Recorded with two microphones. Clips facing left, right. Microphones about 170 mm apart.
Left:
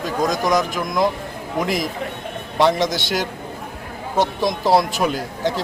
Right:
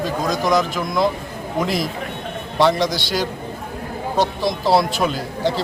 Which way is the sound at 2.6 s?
20° left (ahead or behind).